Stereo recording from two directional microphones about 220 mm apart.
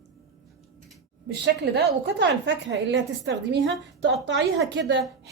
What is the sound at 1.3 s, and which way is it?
A woman's voice, 50° right (ahead or behind).